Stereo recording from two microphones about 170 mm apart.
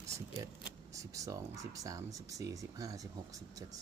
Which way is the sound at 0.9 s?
20° right (ahead or behind).